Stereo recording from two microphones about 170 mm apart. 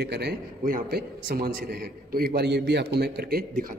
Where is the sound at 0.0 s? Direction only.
75° right (ahead or behind).